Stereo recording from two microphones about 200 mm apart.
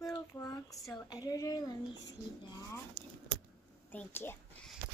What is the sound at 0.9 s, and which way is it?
Speech, 20° left (ahead or behind).